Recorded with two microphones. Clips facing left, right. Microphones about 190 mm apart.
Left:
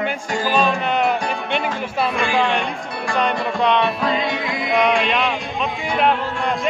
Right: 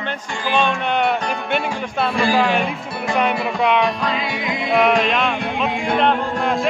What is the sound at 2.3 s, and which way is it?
A man's voice, 5° right (ahead or behind).